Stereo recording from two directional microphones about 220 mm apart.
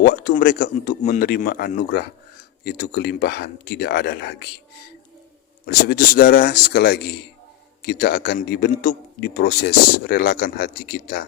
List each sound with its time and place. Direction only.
0.0 s a man's voice: 40° left (ahead or behind)
5.6 s a man's voice: 45° left (ahead or behind)